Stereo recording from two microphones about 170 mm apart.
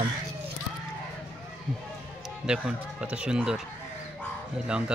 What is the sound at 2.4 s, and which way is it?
Speech, 5° right (ahead or behind).